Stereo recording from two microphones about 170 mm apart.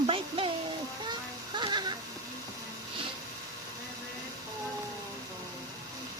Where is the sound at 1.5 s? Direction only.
25° right (ahead or behind).